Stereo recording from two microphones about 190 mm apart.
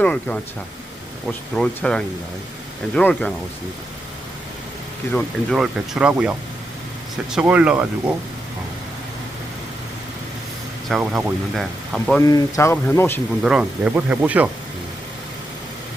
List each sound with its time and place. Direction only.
0.0 s speech: 5° left (ahead or behind)
5.1 s speech: centre (ahead or behind)
10.8 s speech: centre (ahead or behind)
12.2 s speech: 15° left (ahead or behind)
13.4 s speech: 5° right (ahead or behind)